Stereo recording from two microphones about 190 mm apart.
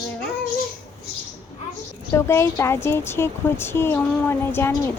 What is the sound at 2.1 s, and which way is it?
Speech, 15° left (ahead or behind).